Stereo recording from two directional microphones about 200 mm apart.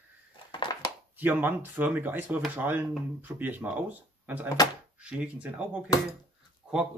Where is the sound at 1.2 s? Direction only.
10° right (ahead or behind).